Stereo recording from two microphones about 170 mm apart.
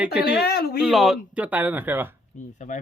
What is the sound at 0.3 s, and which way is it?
Speech, 65° left (ahead or behind).